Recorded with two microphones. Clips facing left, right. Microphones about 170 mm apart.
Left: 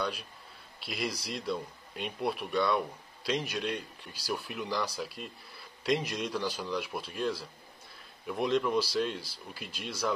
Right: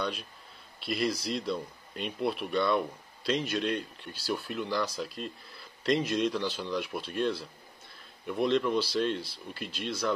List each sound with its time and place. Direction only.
0.8 s speech: 5° left (ahead or behind)